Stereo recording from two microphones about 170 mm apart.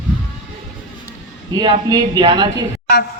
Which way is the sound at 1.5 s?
25° right (ahead or behind).